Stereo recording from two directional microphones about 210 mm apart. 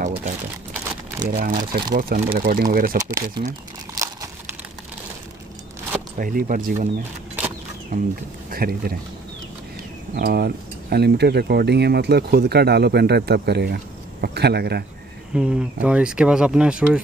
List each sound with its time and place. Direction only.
0.0 s a sound: 40° right (ahead or behind)
1.5 s speech: 35° right (ahead or behind)
3.0 s speech: 15° right (ahead or behind)
3.9 s crumpling: 15° right (ahead or behind)
6.1 s speech: 40° right (ahead or behind)
7.9 s speech: 35° right (ahead or behind)
10.1 s speech: 45° right (ahead or behind)
15.3 s speech: 5° right (ahead or behind)